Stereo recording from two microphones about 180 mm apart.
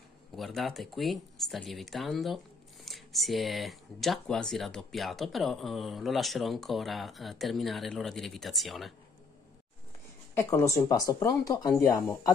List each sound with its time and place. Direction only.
0.4 s speech: centre (ahead or behind)
10.3 s speech: 15° left (ahead or behind)